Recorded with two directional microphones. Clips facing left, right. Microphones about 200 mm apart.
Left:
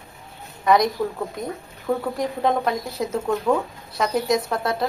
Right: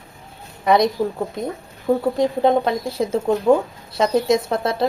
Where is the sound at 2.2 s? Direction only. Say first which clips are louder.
Right 6 dB; 30° right (ahead or behind).